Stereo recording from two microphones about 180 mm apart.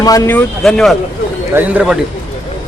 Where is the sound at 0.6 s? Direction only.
Centre (ahead or behind).